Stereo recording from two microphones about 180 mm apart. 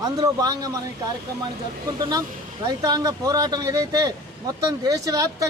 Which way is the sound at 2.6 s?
20° right (ahead or behind).